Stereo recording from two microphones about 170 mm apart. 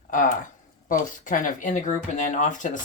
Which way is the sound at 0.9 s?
50° left (ahead or behind).